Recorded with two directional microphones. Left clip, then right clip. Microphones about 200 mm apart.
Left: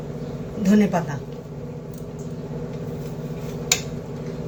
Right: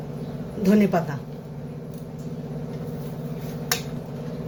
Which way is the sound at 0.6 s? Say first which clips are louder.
Even; 30° right (ahead or behind).